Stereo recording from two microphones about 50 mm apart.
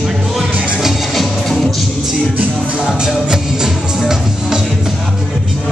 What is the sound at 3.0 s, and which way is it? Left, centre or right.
Music, centre.